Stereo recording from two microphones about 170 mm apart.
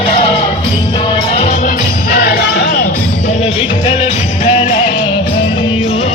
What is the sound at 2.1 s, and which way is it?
Music, 65° left (ahead or behind).